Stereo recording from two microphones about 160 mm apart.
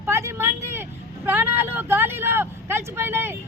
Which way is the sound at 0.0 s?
15° right (ahead or behind).